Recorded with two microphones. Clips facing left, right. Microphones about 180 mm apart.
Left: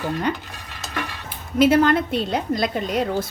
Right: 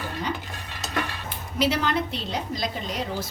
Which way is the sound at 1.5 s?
50° left (ahead or behind).